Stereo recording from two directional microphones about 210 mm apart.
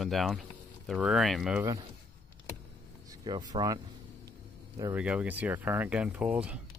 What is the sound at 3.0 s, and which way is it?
Speech, 15° right (ahead or behind).